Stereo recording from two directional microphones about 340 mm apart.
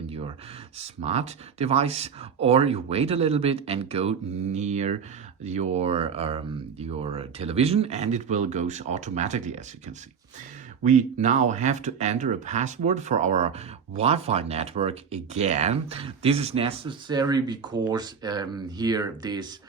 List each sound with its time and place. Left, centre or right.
0.1 s a sound: centre
0.8 s speech: centre
10.8 s speech: right